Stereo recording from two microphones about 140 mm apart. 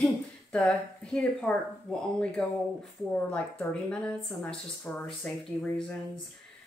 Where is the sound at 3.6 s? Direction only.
5° left (ahead or behind).